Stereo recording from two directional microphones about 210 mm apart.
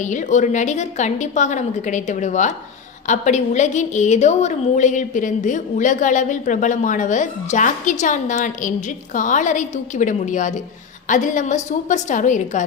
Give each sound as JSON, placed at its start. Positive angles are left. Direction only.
{"t": 0.0, "sound": "a woman's voice", "side_deg": 35}